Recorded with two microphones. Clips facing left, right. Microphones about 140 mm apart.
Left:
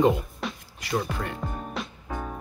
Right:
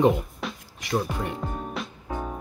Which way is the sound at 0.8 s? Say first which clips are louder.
Right 2 dB; 15° right (ahead or behind).